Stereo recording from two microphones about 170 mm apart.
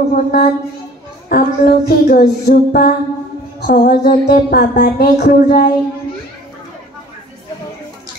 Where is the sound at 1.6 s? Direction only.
60° left (ahead or behind).